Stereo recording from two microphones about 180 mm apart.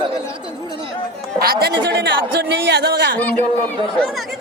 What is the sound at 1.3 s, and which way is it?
Speech, 55° right (ahead or behind).